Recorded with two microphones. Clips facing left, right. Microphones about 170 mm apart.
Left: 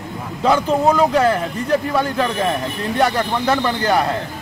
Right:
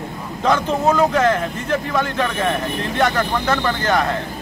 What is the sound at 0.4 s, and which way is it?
Speech, 10° left (ahead or behind).